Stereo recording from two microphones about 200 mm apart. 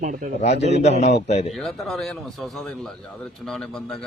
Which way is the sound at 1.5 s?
Centre (ahead or behind).